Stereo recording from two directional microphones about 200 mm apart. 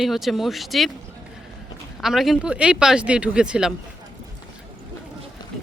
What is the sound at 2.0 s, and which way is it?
Speech, centre (ahead or behind).